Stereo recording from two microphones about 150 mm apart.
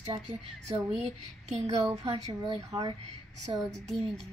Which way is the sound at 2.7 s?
25° right (ahead or behind).